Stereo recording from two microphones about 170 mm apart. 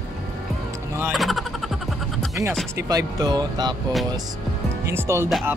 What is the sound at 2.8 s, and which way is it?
Speech, 20° right (ahead or behind).